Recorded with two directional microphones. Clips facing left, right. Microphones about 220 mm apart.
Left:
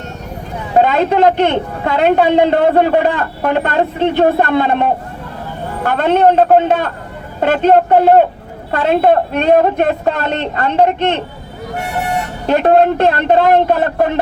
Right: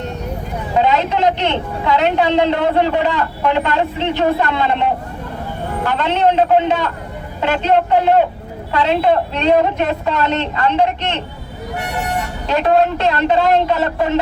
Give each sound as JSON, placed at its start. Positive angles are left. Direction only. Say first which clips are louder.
{"t": 0.8, "sound": "a man's voice", "louder": "left 4 dB", "side_deg": 55}
{"t": 12.5, "sound": "a man's voice", "louder": "left 4 dB", "side_deg": 50}